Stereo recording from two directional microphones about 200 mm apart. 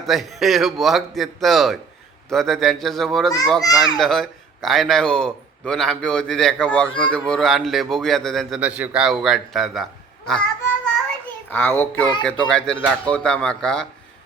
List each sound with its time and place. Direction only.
0.0 s a man's voice: centre (ahead or behind)
3.6 s a child's voice: 20° left (ahead or behind)
4.0 s a man's voice: centre (ahead or behind)
10.2 s a sound: 5° left (ahead or behind)
11.4 s a child's voice: 10° left (ahead or behind)